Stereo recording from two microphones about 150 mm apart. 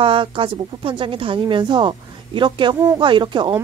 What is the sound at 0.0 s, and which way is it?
Speech, 35° right (ahead or behind).